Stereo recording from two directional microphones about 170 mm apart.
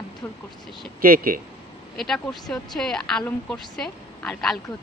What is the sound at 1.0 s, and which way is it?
Speech, 55° right (ahead or behind).